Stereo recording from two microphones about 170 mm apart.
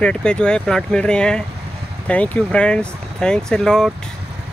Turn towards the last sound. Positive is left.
turn(degrees=5)  # may be behind; listen again after turning